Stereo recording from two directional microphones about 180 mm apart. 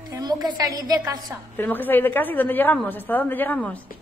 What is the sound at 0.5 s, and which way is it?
Speech, 20° right (ahead or behind).